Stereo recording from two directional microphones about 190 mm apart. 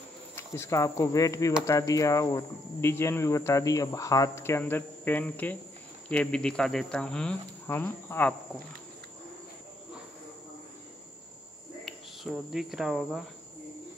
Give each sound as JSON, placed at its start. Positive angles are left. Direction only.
{"t": 0.4, "sound": "speech", "side_deg": 15}
{"t": 11.8, "sound": "speech", "side_deg": 0}